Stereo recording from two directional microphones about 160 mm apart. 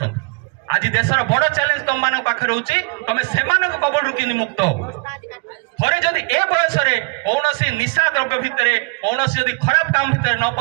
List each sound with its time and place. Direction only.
0.7 s a man's voice: 30° right (ahead or behind)
5.8 s a man's voice: 30° right (ahead or behind)